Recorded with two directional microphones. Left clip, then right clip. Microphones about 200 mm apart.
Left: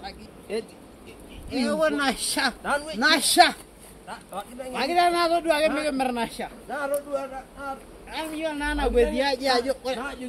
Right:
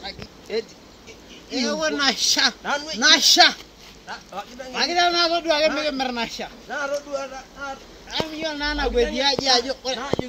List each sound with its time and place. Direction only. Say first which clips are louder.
0.5 s speech: right 4 dB; 25° left (ahead or behind)
1.5 s speech: even; 5° right (ahead or behind)
2.6 s speech: right 1 dB; 20° left (ahead or behind)
3.0 s a man's voice: right 4 dB; 5° right (ahead or behind)
4.1 s speech: right 2 dB; 15° left (ahead or behind)
4.7 s a man's voice: right 2 dB; centre (ahead or behind)